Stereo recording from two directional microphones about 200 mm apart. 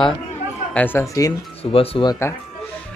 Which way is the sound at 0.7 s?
10° left (ahead or behind).